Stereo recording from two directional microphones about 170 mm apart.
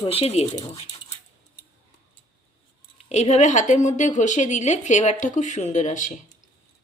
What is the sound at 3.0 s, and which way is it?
A woman's voice, 40° left (ahead or behind).